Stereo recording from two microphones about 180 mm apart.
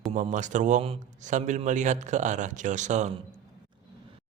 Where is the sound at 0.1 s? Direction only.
40° right (ahead or behind).